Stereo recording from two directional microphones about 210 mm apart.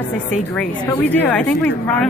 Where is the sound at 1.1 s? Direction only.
5° left (ahead or behind).